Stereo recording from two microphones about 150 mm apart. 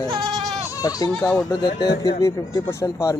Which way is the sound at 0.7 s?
25° left (ahead or behind).